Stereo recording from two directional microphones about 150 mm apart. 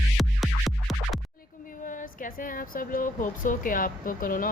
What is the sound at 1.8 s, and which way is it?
A woman's voice, 65° left (ahead or behind).